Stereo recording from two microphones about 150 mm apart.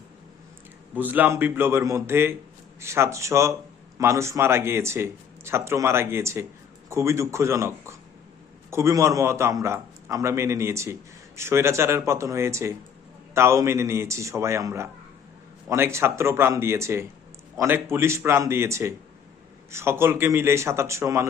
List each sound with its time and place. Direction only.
0.9 s a man's voice: 10° right (ahead or behind)